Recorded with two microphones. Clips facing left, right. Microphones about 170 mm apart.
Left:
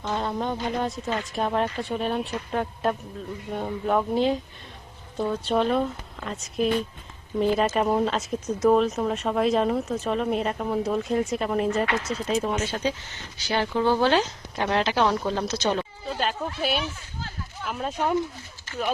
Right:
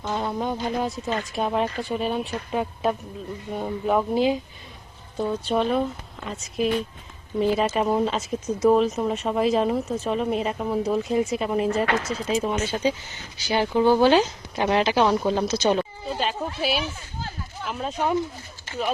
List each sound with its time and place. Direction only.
0.0 s speech: 5° right (ahead or behind)